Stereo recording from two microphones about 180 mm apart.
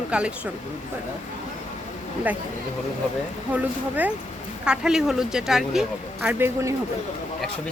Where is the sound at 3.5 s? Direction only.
10° right (ahead or behind).